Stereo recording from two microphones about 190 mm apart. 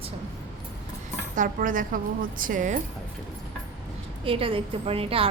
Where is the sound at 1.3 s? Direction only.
45° right (ahead or behind).